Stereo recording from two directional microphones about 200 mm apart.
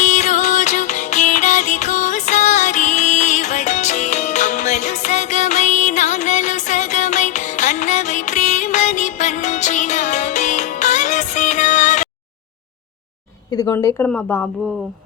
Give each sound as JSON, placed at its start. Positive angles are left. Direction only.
{"t": 0.0, "sound": "music", "side_deg": 35}
{"t": 13.5, "sound": "speech", "side_deg": 15}